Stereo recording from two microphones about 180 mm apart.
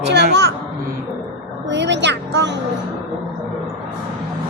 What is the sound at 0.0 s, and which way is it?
Speech, 75° right (ahead or behind).